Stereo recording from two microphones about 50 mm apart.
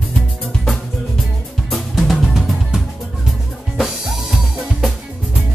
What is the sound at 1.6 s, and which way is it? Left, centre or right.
Music, centre.